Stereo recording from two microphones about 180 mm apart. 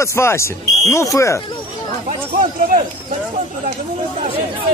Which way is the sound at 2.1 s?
40° right (ahead or behind).